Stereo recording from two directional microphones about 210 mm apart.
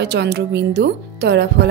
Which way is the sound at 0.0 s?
55° right (ahead or behind).